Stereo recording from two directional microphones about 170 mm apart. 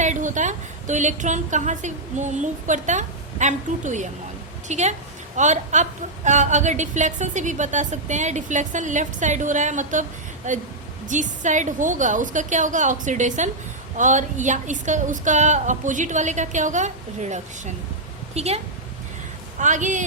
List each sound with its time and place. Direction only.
0.0 s a woman's voice: 45° right (ahead or behind)